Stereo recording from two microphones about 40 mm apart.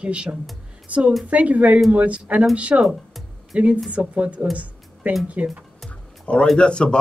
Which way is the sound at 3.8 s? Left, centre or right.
Right.